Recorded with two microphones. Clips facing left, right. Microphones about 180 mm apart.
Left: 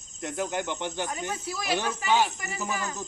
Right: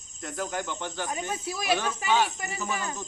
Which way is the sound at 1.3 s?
20° right (ahead or behind).